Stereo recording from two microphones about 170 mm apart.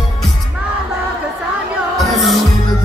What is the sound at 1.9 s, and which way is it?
Music, centre (ahead or behind).